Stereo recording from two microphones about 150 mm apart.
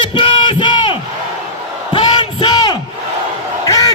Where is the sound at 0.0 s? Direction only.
30° left (ahead or behind).